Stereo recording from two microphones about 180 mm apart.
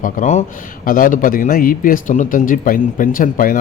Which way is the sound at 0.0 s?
40° left (ahead or behind).